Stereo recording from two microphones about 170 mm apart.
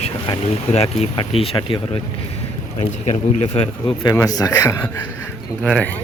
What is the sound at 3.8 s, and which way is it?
Speech, 25° left (ahead or behind).